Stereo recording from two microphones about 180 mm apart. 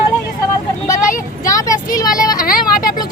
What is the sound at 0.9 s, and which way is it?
Vehicle, 45° left (ahead or behind).